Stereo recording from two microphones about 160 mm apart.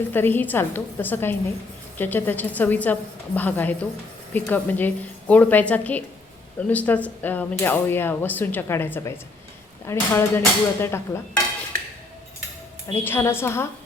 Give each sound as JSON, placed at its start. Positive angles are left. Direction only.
{"t": 0.1, "sound": "speech", "side_deg": 10}
{"t": 12.9, "sound": "speech", "side_deg": 15}